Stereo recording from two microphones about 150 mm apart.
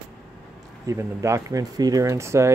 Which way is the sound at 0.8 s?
20° right (ahead or behind).